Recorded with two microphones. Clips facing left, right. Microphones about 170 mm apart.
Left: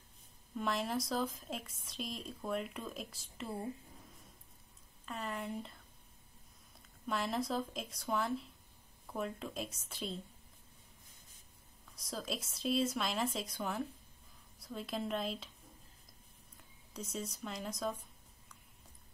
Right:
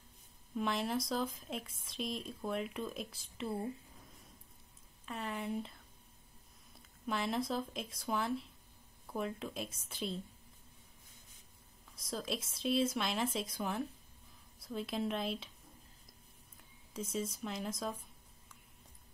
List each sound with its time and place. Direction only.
0.6 s a woman's voice: centre (ahead or behind)
5.0 s a woman's voice: centre (ahead or behind)
7.1 s a woman's voice: centre (ahead or behind)
11.9 s a woman's voice: centre (ahead or behind)
16.9 s a woman's voice: centre (ahead or behind)